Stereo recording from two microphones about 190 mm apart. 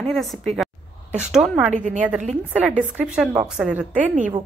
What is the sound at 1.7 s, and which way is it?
Speech, 40° right (ahead or behind).